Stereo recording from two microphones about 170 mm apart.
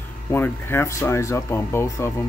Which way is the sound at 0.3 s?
15° left (ahead or behind).